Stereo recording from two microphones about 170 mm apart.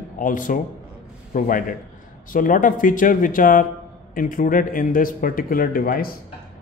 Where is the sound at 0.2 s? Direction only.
50° left (ahead or behind).